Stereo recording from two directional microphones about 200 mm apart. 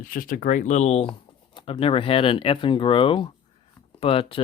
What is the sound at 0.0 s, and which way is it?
Speech, 45° left (ahead or behind).